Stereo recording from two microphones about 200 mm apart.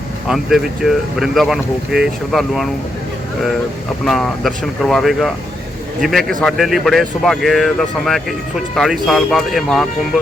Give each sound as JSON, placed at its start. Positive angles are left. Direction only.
{"t": 0.3, "sound": "speech", "side_deg": 0}
{"t": 4.0, "sound": "speech", "side_deg": 0}